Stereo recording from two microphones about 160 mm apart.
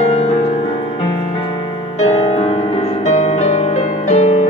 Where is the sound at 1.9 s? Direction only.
45° left (ahead or behind).